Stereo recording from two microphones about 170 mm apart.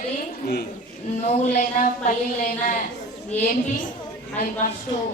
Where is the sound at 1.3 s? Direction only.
50° left (ahead or behind).